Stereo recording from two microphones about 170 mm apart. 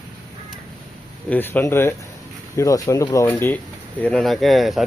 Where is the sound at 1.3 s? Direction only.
10° left (ahead or behind).